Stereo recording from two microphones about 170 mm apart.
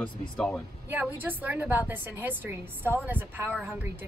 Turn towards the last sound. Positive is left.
turn(degrees=-10)  # may be behind; listen again after turning